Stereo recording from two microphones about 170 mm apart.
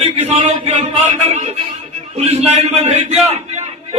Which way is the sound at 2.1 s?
40° right (ahead or behind).